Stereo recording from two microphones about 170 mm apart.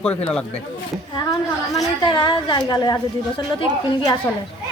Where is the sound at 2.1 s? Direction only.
25° left (ahead or behind).